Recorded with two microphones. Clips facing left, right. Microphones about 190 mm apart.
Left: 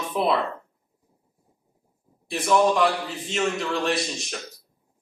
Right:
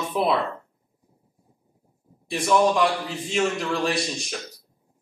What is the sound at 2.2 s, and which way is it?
Speech, centre (ahead or behind).